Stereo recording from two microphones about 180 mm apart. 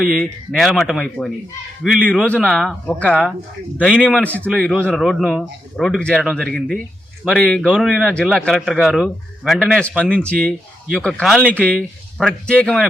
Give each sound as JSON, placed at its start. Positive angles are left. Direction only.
{"t": 0.0, "sound": "speech", "side_deg": 0}